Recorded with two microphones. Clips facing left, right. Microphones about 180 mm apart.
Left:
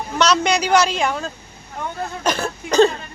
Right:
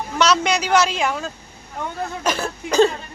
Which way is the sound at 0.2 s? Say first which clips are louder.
Left 1 dB; 5° right (ahead or behind).